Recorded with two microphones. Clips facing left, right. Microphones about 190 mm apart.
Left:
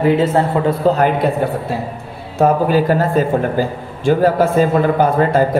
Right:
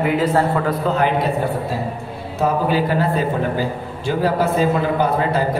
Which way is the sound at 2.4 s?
45° left (ahead or behind).